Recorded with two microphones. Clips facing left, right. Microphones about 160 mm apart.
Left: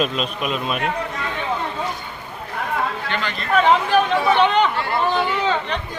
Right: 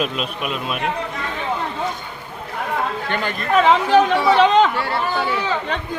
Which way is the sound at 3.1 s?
50° right (ahead or behind).